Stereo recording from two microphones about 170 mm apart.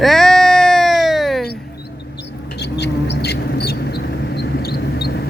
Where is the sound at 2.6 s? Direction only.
80° left.